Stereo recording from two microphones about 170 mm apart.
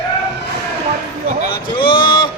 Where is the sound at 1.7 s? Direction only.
30° left (ahead or behind).